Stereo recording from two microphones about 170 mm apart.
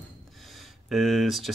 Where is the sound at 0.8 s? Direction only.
Centre (ahead or behind).